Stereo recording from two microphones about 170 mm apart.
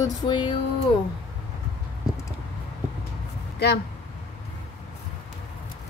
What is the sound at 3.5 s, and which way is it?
Speech, 75° left (ahead or behind).